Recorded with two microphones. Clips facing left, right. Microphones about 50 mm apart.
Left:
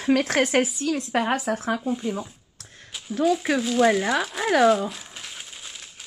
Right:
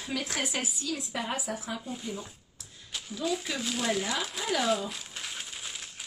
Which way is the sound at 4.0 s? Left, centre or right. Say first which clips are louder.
Left 8 dB; left.